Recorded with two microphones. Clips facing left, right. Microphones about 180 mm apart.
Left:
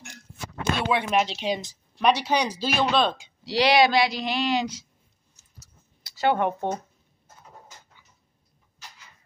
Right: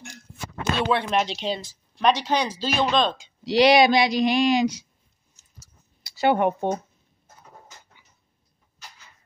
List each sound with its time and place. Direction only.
0.8 s speech: 10° left (ahead or behind)
3.4 s speech: 15° right (ahead or behind)
6.0 s speech: 10° right (ahead or behind)